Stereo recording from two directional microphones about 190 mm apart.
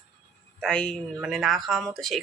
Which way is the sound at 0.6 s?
5° left (ahead or behind).